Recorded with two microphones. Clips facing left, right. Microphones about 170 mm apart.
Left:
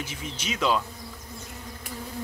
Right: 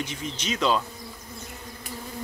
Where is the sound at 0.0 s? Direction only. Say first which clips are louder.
Right 3 dB; 5° left (ahead or behind).